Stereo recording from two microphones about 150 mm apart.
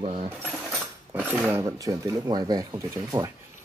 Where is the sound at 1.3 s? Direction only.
10° right (ahead or behind).